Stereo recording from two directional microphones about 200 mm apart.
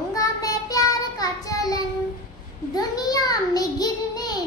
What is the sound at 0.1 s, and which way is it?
Child singing, 20° left (ahead or behind).